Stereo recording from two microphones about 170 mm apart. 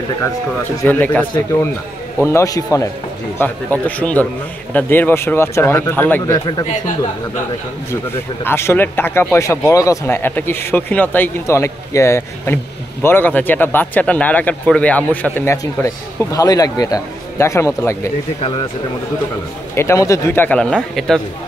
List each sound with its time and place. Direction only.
0.8 s speech: 10° left (ahead or behind)
8.5 s speech: 15° left (ahead or behind)
19.7 s speech: 15° left (ahead or behind)